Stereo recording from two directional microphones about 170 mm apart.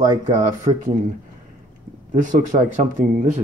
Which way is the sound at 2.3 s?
50° right (ahead or behind).